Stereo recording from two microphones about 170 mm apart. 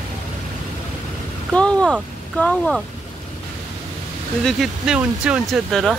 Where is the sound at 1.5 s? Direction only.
5° left (ahead or behind).